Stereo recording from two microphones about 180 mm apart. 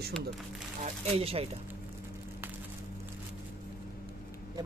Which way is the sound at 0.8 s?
35° right (ahead or behind).